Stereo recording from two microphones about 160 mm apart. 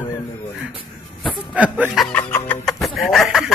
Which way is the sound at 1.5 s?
10° right (ahead or behind).